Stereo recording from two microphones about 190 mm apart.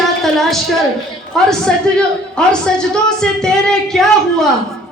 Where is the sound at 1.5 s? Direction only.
5° left (ahead or behind).